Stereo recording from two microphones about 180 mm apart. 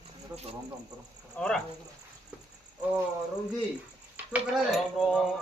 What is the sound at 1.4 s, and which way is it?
Speech, 5° left (ahead or behind).